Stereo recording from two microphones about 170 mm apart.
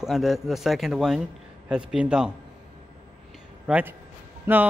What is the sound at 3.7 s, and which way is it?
Speech, 10° right (ahead or behind).